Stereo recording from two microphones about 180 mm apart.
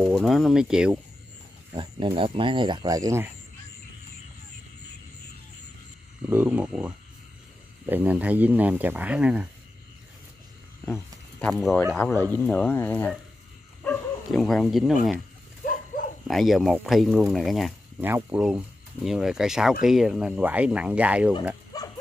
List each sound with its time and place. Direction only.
0.0 s speech: centre (ahead or behind)
1.7 s speech: 25° right (ahead or behind)
6.3 s speech: 10° right (ahead or behind)
10.9 s speech: 5° left (ahead or behind)
15.6 s dog: 50° left (ahead or behind)
16.3 s speech: centre (ahead or behind)
18.0 s speech: 10° right (ahead or behind)
21.7 s dog: 20° left (ahead or behind)